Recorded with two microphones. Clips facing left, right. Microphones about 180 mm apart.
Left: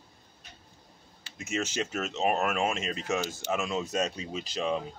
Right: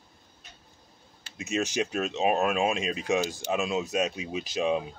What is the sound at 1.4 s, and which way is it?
Speech, 15° right (ahead or behind).